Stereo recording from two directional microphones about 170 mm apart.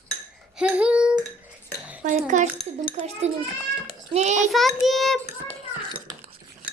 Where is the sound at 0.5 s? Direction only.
5° right (ahead or behind).